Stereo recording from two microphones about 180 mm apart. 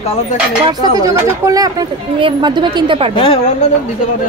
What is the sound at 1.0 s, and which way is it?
Speech, 20° right (ahead or behind).